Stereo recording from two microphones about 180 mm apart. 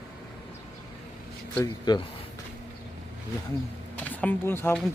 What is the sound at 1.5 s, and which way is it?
Speech, 20° left (ahead or behind).